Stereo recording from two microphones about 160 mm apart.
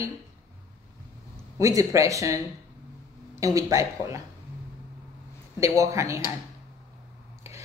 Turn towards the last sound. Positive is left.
turn(degrees=-20)  # may be behind; listen again after turning